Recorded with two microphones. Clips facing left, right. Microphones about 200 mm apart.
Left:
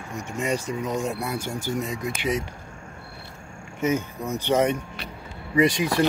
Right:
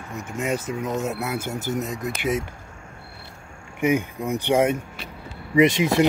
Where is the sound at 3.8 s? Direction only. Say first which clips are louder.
Right 3 dB; 15° right (ahead or behind).